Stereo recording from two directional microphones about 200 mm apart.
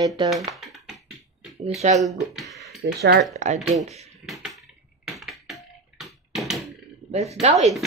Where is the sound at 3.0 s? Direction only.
55° right (ahead or behind).